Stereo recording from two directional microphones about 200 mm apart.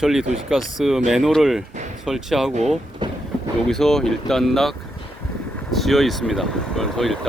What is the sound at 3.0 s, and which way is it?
Train, 20° right (ahead or behind).